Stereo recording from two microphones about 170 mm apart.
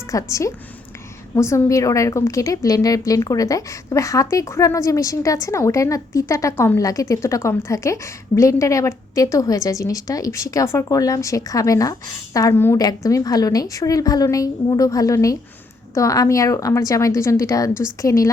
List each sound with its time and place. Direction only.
0.1 s a woman's voice: 20° left (ahead or behind)